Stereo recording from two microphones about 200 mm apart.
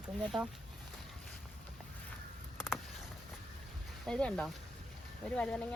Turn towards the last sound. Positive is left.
turn(degrees=5)  # may be behind; listen again after turning